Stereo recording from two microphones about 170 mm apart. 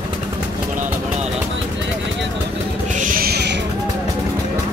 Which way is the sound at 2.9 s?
55° right (ahead or behind).